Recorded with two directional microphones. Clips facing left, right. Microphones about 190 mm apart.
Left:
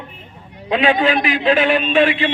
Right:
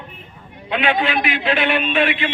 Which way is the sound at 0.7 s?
40° left (ahead or behind).